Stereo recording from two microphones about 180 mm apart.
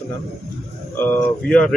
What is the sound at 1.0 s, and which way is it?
Speech, 10° left (ahead or behind).